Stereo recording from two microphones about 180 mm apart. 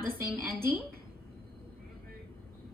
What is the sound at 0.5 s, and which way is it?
Speech, 10° right (ahead or behind).